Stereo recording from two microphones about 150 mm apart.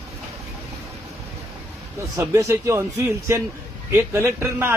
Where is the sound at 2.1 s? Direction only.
20° right (ahead or behind).